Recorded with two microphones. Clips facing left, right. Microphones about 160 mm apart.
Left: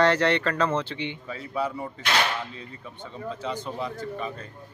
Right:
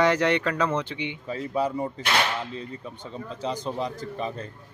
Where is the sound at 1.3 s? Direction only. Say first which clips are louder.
Right 5 dB; 40° right (ahead or behind).